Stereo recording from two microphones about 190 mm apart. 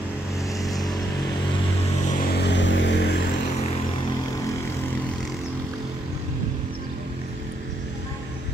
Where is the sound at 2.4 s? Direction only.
70° left (ahead or behind).